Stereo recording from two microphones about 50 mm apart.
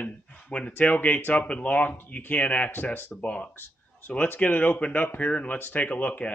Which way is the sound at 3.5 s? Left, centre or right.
Left.